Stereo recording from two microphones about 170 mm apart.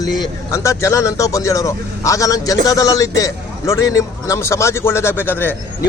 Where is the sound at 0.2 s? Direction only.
15° left (ahead or behind).